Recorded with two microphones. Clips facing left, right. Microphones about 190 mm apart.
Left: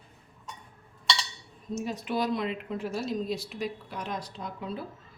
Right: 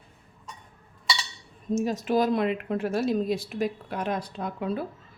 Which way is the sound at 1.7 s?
45° right (ahead or behind).